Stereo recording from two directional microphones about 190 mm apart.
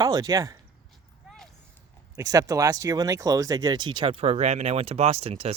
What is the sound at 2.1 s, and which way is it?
Speech, 15° right (ahead or behind).